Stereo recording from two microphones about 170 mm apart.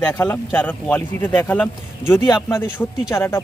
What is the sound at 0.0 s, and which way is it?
Speech, 10° left (ahead or behind).